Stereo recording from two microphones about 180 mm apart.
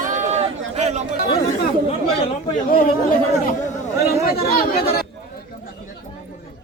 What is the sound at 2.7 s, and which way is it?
Speech, 55° left (ahead or behind).